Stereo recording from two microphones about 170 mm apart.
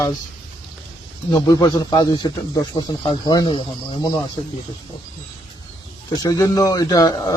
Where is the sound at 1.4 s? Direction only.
25° left (ahead or behind).